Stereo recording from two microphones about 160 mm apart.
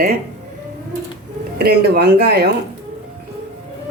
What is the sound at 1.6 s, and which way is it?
Speech, 80° right.